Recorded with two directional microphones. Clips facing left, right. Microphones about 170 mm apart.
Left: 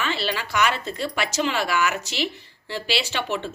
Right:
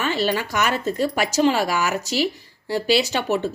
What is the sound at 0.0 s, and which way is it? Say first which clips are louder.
Speech: right 5 dB; 45° right (ahead or behind).